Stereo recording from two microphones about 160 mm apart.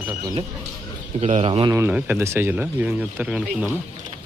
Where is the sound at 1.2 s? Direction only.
40° right (ahead or behind).